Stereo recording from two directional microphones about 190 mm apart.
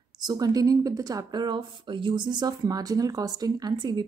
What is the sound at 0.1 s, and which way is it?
Speech, 20° right (ahead or behind).